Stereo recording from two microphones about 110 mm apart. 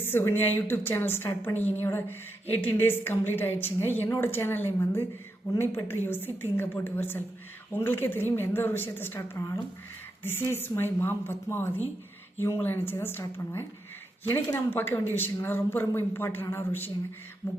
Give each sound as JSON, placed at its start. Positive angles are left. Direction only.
{"t": 0.0, "sound": "a woman's voice", "side_deg": 20}